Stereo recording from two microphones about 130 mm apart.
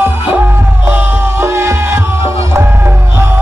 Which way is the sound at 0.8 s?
15° right (ahead or behind).